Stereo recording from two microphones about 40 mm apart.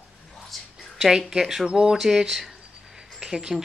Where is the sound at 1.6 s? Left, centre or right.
Right.